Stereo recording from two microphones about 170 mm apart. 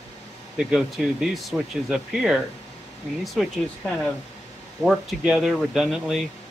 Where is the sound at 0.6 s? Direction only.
5° right (ahead or behind).